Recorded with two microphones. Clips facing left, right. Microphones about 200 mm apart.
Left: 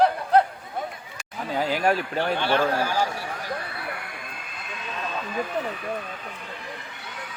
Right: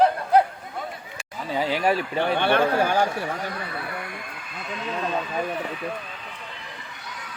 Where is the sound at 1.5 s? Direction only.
Centre (ahead or behind).